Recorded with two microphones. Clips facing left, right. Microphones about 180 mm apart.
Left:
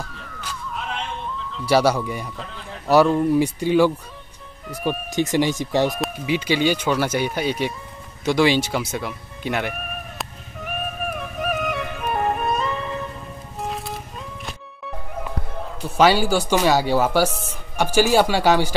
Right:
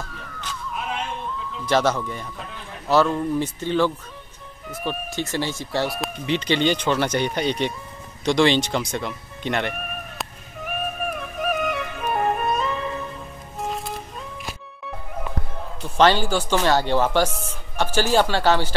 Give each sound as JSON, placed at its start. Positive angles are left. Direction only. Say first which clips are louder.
{"t": 1.7, "sound": "speech", "louder": "left 3 dB", "side_deg": 10}
{"t": 8.3, "sound": "music", "louder": "even", "side_deg": 5}
{"t": 16.0, "sound": "speech", "louder": "left 1 dB", "side_deg": 10}